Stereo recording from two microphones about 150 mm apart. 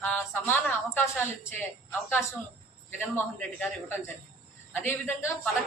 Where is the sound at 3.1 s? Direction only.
10° left (ahead or behind).